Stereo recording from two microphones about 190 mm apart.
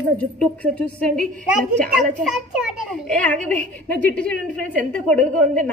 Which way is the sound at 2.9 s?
5° left (ahead or behind).